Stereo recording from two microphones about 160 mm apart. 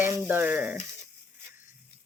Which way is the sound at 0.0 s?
15° right (ahead or behind).